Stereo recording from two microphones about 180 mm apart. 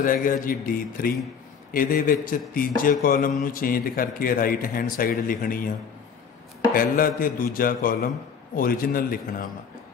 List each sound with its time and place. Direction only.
0.0 s speech: 50° left (ahead or behind)
6.7 s speech: 50° left (ahead or behind)